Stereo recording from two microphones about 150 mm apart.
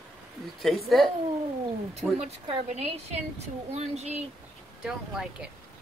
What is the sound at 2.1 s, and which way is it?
A woman's voice, 45° right (ahead or behind).